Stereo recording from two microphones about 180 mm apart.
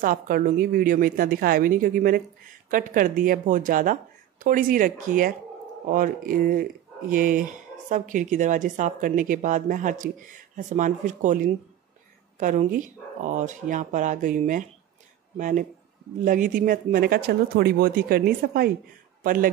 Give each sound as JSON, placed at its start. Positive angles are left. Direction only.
{"t": 0.0, "sound": "speech", "side_deg": -50}